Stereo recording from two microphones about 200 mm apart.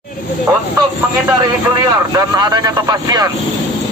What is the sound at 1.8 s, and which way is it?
Speech, 20° right (ahead or behind).